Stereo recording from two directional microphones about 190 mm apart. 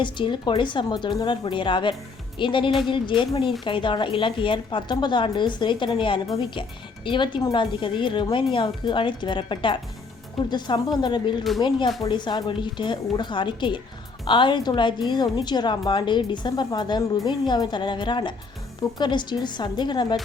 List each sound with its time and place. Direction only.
0.0 s a woman's voice: 25° left (ahead or behind)